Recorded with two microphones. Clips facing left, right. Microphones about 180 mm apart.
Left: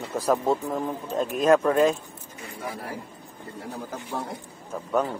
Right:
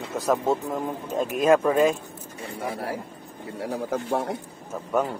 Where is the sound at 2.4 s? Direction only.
30° right (ahead or behind).